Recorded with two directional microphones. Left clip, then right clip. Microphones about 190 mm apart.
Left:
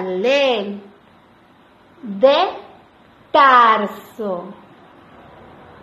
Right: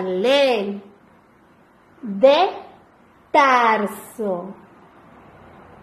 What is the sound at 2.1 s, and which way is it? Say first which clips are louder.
A woman's voice: left 1 dB; 25° right (ahead or behind).